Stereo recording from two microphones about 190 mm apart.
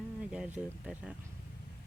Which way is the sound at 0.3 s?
5° right (ahead or behind).